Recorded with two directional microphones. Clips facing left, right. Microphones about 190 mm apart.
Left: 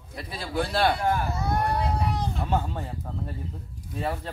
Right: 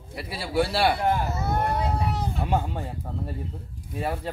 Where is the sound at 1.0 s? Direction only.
20° right (ahead or behind).